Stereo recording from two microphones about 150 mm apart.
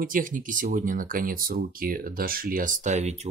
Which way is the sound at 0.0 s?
65° right (ahead or behind).